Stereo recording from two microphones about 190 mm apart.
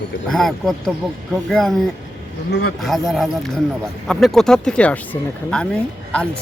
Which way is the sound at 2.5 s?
60° left (ahead or behind).